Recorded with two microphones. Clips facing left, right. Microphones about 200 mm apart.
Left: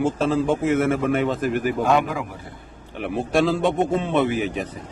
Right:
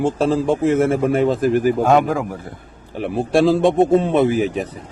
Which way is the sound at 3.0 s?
35° right (ahead or behind).